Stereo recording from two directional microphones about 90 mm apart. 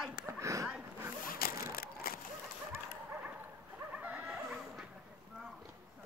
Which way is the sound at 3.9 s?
20° right (ahead or behind).